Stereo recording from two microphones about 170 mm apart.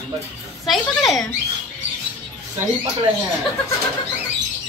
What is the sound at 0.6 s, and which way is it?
Speech, centre (ahead or behind).